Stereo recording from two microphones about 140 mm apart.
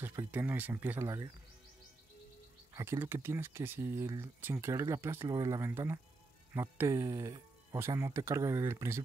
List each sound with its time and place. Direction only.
0.0 s speech: 20° right (ahead or behind)
2.7 s speech: 20° right (ahead or behind)